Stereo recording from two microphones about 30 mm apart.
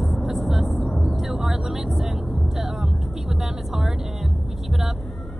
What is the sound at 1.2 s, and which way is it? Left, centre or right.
Vehicle, centre.